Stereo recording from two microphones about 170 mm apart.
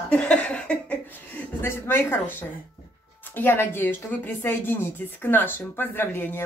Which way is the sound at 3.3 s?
15° left (ahead or behind).